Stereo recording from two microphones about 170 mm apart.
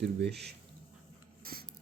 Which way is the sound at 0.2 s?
80° right.